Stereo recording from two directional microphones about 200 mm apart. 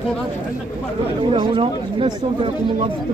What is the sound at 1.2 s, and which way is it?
Speech, 25° right (ahead or behind).